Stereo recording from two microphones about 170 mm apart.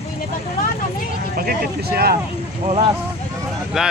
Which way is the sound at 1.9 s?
65° right (ahead or behind).